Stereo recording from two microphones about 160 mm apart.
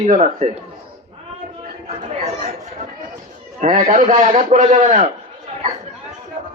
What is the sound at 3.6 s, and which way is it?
A man's voice, 55° right (ahead or behind).